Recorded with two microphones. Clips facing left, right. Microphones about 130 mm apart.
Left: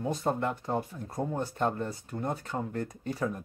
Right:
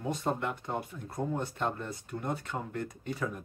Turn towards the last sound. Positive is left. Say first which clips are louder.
# left 3 dB
turn(degrees=35)  # may be behind; listen again after turning